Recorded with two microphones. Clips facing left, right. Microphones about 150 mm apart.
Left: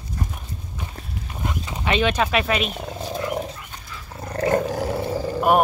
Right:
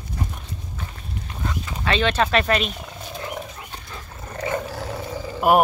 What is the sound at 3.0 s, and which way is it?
Wild animals, 35° left (ahead or behind).